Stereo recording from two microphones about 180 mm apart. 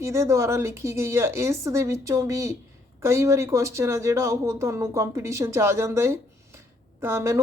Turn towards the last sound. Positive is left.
turn(degrees=-15)  # may be behind; listen again after turning